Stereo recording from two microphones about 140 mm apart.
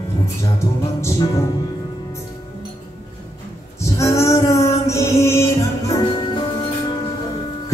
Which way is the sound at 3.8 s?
20° left (ahead or behind).